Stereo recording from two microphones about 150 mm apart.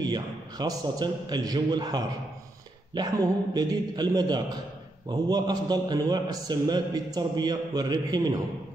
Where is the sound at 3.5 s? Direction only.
25° right (ahead or behind).